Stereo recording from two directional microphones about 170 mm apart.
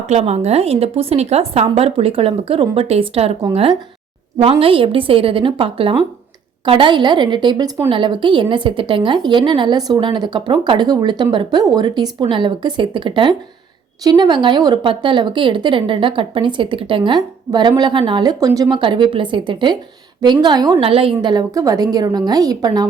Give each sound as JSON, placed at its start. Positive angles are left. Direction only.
{"t": 0.1, "sound": "a woman's voice", "side_deg": -35}